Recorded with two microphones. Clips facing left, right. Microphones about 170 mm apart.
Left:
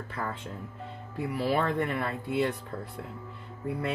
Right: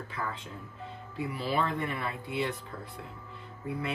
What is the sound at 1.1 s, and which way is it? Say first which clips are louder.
Speech: left 3 dB; 55° left (ahead or behind).